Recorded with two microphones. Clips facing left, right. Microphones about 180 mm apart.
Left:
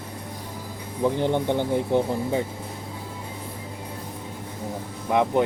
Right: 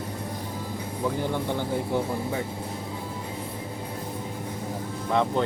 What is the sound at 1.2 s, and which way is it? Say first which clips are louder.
Speech: left 5 dB; 20° left (ahead or behind).